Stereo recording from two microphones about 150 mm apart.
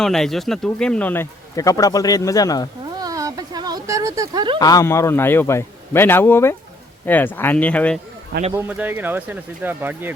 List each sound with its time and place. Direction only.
0.0 s speech: 5° left (ahead or behind); by 2.6 s 25° left (ahead or behind)
2.9 s a sound: 25° right (ahead or behind)
4.6 s speech: 25° left (ahead or behind)
8.5 s speech: 10° right (ahead or behind)